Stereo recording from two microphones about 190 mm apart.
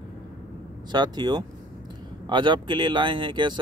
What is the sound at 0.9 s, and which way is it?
Speech, 20° right (ahead or behind).